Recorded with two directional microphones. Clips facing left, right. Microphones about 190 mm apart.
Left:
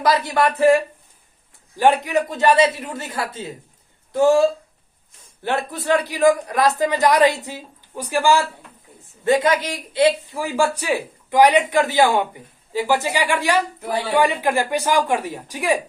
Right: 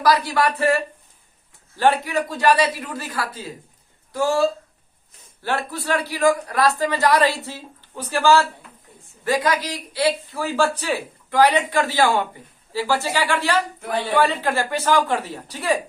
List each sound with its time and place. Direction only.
0.0 s a man's voice: 25° left (ahead or behind)
1.7 s a man's voice: 15° left (ahead or behind)